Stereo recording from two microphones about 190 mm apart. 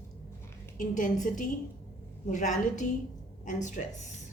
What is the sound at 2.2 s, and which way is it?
A woman's voice, 40° left (ahead or behind).